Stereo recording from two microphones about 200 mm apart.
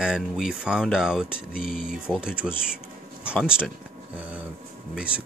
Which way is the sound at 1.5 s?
45° left (ahead or behind).